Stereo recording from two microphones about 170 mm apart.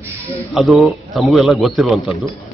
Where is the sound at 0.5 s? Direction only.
Centre (ahead or behind).